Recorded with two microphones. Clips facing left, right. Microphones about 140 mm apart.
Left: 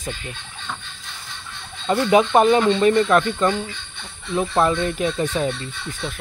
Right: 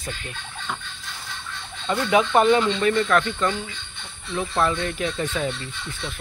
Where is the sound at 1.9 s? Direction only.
30° left (ahead or behind).